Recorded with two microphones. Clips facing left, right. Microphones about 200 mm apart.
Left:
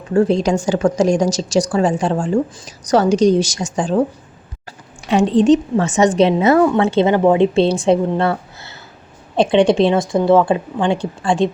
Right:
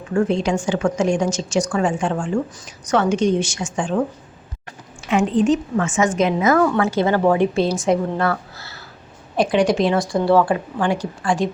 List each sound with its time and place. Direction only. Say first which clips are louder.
0.1 s a woman's voice: left 4 dB; 35° left (ahead or behind)
5.0 s a woman's voice: left 5 dB; 35° left (ahead or behind)